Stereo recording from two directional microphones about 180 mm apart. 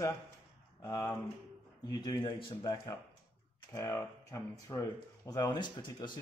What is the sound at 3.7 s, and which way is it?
Speech, 15° left (ahead or behind).